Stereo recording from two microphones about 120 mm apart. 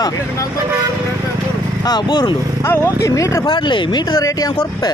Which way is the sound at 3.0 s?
25° left (ahead or behind).